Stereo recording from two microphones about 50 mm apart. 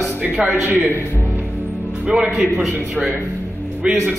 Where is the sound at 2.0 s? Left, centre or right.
Centre.